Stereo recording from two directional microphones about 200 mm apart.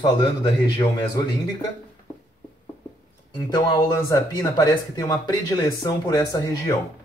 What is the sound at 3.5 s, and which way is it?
Speech, 20° left (ahead or behind).